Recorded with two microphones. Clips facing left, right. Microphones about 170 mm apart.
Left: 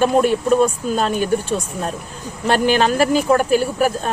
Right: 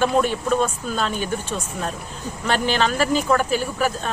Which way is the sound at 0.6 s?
45° left (ahead or behind).